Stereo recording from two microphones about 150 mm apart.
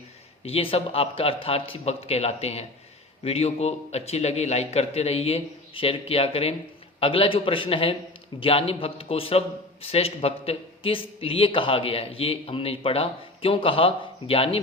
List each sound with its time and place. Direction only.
0.4 s a man's voice: 40° left (ahead or behind)